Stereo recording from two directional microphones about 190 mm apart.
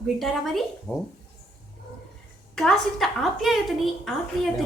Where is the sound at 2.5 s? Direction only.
Centre (ahead or behind).